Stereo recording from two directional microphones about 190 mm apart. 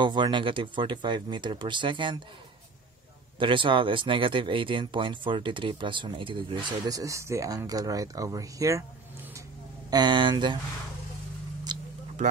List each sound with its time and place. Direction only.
0.0 s speech: 25° right (ahead or behind)
3.3 s speech: 25° right (ahead or behind)
9.8 s speech: 25° right (ahead or behind)
11.7 s a sound: 20° right (ahead or behind)